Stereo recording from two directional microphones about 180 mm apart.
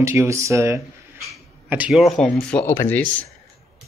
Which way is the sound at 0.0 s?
15° right (ahead or behind).